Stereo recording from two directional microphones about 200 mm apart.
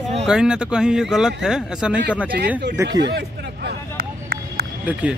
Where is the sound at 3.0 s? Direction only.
55° right (ahead or behind).